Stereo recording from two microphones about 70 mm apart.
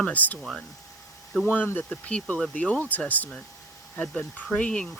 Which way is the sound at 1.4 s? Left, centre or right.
Left.